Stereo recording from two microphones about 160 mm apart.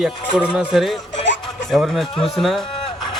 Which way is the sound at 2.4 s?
Centre (ahead or behind).